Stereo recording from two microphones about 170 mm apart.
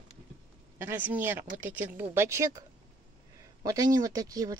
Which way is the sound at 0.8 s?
10° right (ahead or behind).